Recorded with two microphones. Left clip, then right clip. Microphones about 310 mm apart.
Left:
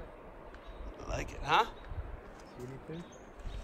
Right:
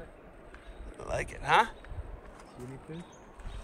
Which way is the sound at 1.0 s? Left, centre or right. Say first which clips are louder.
Right 6 dB; centre.